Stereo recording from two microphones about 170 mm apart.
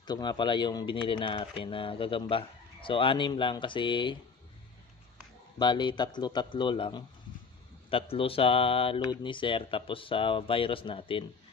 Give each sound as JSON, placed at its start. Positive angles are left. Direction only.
{"t": 0.0, "sound": "speech", "side_deg": 25}
{"t": 5.6, "sound": "speech", "side_deg": 25}